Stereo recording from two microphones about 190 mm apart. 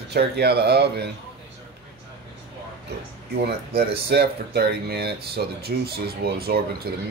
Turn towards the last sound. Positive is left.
turn(degrees=-55)  # may be behind; listen again after turning